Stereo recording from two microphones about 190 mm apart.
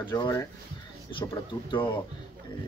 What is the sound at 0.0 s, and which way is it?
Speech, 25° left (ahead or behind).